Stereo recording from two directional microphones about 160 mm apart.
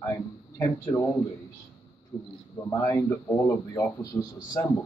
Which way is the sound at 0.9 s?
25° left (ahead or behind).